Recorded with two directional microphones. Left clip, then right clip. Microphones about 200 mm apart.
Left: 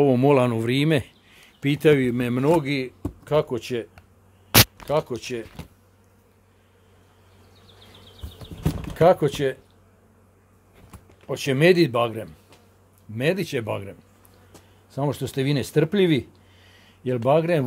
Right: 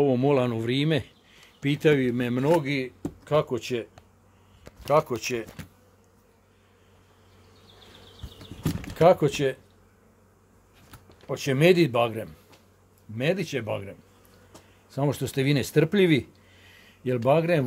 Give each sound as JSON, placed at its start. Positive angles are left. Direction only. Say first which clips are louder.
{"t": 0.0, "sound": "speech", "louder": "left 4 dB", "side_deg": 25}
{"t": 8.9, "sound": "speech", "louder": "left 2 dB", "side_deg": 5}
{"t": 11.2, "sound": "speech", "louder": "left 2 dB", "side_deg": 10}
{"t": 13.1, "sound": "speech", "louder": "left 3 dB", "side_deg": 30}
{"t": 14.9, "sound": "speech", "louder": "left 1 dB", "side_deg": 0}